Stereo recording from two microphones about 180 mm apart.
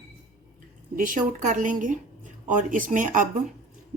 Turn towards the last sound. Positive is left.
turn(degrees=-45)  # may be behind; listen again after turning